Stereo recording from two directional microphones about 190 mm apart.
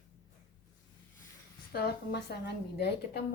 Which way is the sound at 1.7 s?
55° left (ahead or behind).